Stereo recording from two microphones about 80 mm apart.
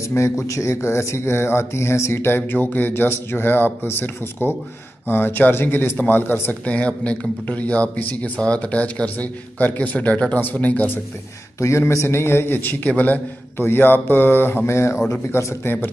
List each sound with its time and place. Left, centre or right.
0.1 s a man's voice: left
6.6 s a man's voice: centre
11.6 s a man's voice: left